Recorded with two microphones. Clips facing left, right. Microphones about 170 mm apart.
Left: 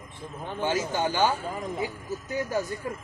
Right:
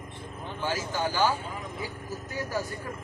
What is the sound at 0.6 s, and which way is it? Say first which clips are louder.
Speech: left 3 dB; 20° left (ahead or behind).